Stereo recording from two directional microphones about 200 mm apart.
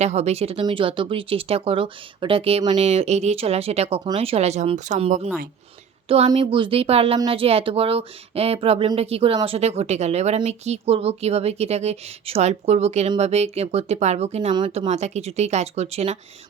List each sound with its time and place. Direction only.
0.0 s speech: 35° right (ahead or behind)